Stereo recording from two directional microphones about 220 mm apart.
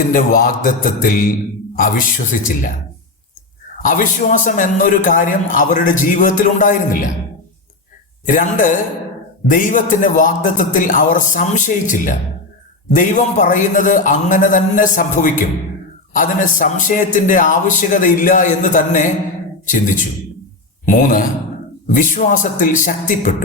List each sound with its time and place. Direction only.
0.1 s a man's voice: 40° left (ahead or behind)
3.8 s a man's voice: 35° left (ahead or behind)
8.3 s a man's voice: 35° left (ahead or behind)